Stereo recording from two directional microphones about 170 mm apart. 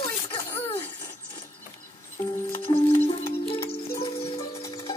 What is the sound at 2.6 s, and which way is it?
Music, 35° left (ahead or behind).